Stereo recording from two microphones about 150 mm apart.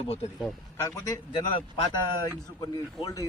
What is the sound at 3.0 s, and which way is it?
Speech, 25° left (ahead or behind).